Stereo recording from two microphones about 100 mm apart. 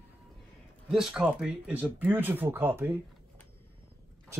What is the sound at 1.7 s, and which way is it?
Speech, 15° right (ahead or behind).